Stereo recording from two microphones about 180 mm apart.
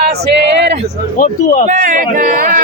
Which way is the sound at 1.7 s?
45° right (ahead or behind).